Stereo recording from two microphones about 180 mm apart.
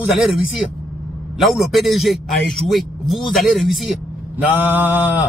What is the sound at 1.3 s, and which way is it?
A man's voice, centre (ahead or behind).